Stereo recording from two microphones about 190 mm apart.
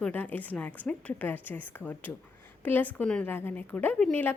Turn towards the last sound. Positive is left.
turn(degrees=5)  # may be behind; listen again after turning